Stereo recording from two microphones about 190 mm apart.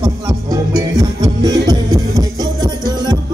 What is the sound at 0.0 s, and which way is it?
Music, 20° right (ahead or behind).